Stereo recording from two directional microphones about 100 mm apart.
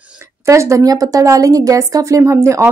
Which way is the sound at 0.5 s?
30° right (ahead or behind).